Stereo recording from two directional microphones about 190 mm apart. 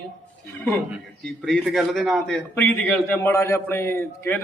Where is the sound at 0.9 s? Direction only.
5° right (ahead or behind).